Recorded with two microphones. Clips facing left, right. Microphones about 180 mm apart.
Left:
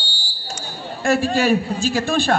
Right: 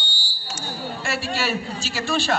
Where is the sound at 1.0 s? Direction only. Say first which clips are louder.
Left 10 dB; 50° left (ahead or behind).